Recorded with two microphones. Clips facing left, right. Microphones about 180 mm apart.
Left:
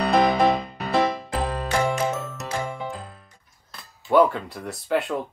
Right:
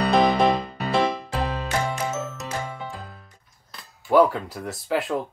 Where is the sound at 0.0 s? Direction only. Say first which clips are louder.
Even; centre (ahead or behind).